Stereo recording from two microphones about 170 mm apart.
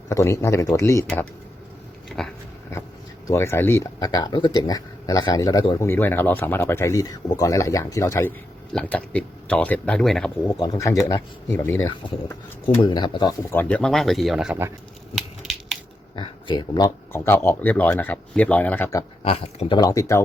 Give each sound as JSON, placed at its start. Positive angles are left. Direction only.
{"t": 0.1, "sound": "speech", "side_deg": 15}
{"t": 2.0, "sound": "dog", "side_deg": 5}
{"t": 3.2, "sound": "speech", "side_deg": 15}
{"t": 10.5, "sound": "speech", "side_deg": 20}
{"t": 12.8, "sound": "speech", "side_deg": 25}
{"t": 13.5, "sound": "speech", "side_deg": 10}
{"t": 15.1, "sound": "a sound", "side_deg": 0}
{"t": 16.1, "sound": "speech", "side_deg": 30}
{"t": 19.2, "sound": "speech", "side_deg": 40}
{"t": 19.7, "sound": "speech", "side_deg": 20}